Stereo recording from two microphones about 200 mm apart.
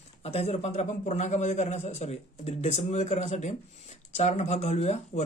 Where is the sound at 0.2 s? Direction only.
30° left (ahead or behind).